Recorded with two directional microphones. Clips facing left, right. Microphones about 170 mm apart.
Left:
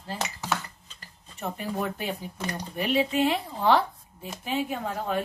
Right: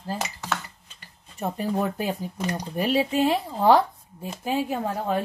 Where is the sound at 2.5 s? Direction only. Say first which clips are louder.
Right 2 dB; 35° right (ahead or behind).